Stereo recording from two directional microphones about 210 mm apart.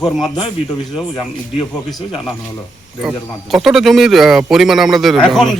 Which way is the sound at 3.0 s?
Centre (ahead or behind).